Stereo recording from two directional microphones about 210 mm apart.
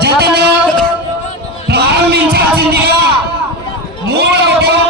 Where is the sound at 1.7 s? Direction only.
50° right (ahead or behind).